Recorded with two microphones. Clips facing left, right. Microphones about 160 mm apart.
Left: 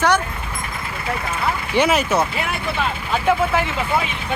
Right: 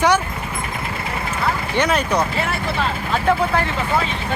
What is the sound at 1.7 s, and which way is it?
Speech, 10° left (ahead or behind).